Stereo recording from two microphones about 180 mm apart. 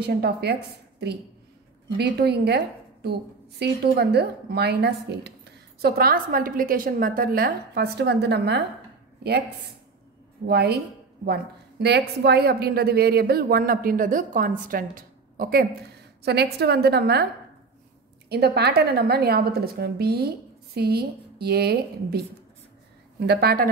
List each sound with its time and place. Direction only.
0.0 s a woman's voice: 65° right (ahead or behind)
10.4 s a woman's voice: 65° right (ahead or behind)
16.2 s a woman's voice: 65° right (ahead or behind)
18.3 s a woman's voice: 65° right (ahead or behind)